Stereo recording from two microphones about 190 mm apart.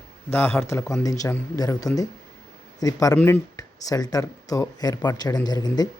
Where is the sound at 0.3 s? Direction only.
10° left (ahead or behind).